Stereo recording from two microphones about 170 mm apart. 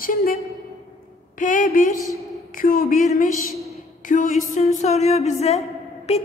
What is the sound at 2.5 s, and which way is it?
Speech, 55° left (ahead or behind).